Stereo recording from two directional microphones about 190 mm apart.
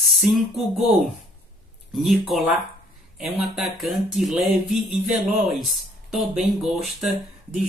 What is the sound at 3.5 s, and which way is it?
Speech, centre (ahead or behind).